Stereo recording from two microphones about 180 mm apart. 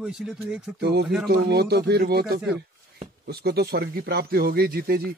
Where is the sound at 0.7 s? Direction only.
65° right (ahead or behind).